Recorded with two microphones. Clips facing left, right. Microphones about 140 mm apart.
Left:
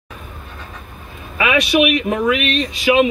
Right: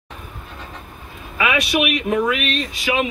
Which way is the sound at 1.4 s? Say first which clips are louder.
Left 4 dB; 20° left (ahead or behind).